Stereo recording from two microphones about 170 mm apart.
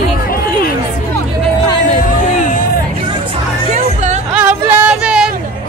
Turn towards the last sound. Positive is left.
turn(degrees=-5)  # may be behind; listen again after turning